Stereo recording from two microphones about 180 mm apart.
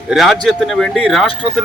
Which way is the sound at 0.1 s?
Centre (ahead or behind).